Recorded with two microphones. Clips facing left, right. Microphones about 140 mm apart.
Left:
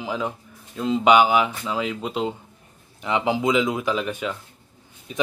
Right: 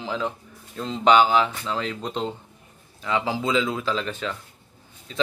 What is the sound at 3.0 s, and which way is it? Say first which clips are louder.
Speech: left 3 dB; 20° left (ahead or behind).